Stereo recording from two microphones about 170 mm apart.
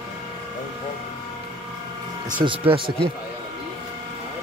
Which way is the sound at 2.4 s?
30° right (ahead or behind).